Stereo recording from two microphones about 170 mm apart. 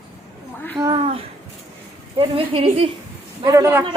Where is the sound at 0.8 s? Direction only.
30° right (ahead or behind).